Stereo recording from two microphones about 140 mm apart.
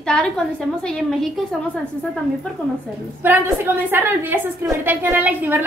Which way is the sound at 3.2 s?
15° right (ahead or behind).